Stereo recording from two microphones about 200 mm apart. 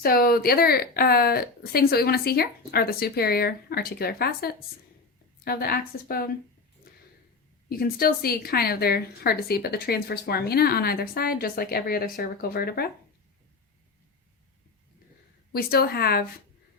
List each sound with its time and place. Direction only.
0.0 s a woman's voice: 50° left (ahead or behind)
7.7 s a woman's voice: 50° left (ahead or behind)
15.5 s a woman's voice: 50° left (ahead or behind)